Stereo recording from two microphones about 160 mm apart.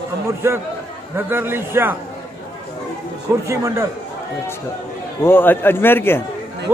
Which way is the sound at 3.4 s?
20° right (ahead or behind).